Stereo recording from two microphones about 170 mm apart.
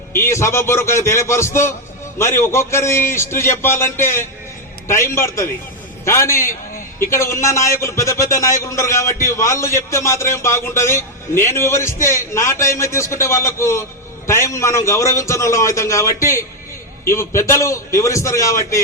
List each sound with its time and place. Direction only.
0.1 s a man's voice: 15° left (ahead or behind)